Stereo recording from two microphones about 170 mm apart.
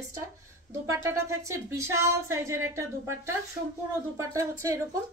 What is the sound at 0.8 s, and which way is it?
A woman's voice, 20° right (ahead or behind).